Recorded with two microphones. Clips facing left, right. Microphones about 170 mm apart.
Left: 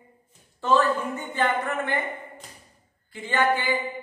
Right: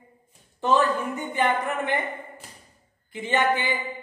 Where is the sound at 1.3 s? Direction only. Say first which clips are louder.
Right 1 dB; 15° right (ahead or behind).